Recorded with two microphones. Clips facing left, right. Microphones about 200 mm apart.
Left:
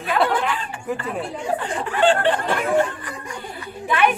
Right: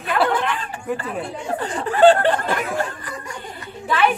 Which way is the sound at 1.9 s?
40° right (ahead or behind).